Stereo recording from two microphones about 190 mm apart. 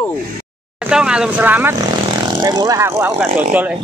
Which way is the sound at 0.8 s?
5° right (ahead or behind).